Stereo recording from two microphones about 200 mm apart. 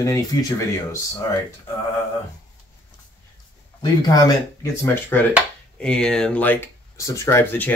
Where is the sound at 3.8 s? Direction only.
20° left (ahead or behind).